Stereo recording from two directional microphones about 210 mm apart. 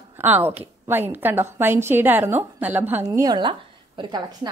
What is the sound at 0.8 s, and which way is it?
A woman's voice, 10° right (ahead or behind).